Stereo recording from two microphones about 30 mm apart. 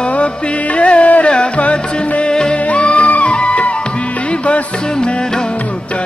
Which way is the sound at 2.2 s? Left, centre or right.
Left.